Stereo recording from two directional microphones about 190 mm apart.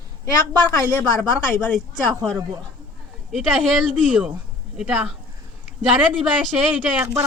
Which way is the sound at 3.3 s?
Centre (ahead or behind).